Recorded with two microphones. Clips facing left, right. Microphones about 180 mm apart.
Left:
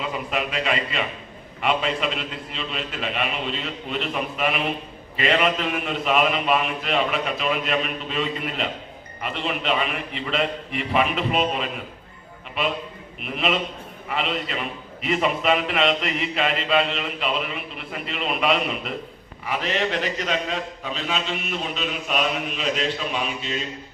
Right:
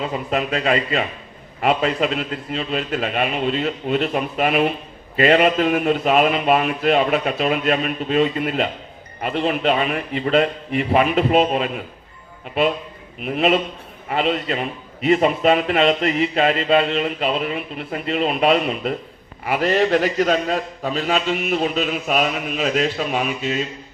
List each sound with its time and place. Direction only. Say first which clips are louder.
0.0 s a man's voice: right 4 dB; 40° right (ahead or behind)
13.2 s a man's voice: right 6 dB; 40° right (ahead or behind)